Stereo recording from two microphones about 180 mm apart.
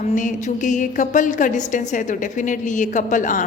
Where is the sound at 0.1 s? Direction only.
45° left (ahead or behind).